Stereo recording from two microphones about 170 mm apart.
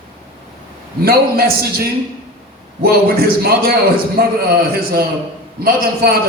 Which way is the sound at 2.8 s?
60° right (ahead or behind).